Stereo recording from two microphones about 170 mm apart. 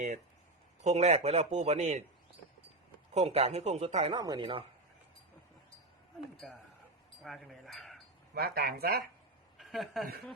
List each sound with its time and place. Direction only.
0.9 s speech: 40° right (ahead or behind)
3.2 s speech: 40° right (ahead or behind)
4.1 s speech: 25° right (ahead or behind)
6.3 s speech: 5° left (ahead or behind)
8.4 s speech: 65° right (ahead or behind)
9.6 s a woman's voice: centre (ahead or behind)